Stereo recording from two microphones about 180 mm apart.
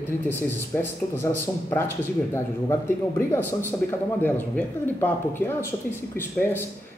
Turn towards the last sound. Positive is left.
turn(degrees=10)  # may be behind; listen again after turning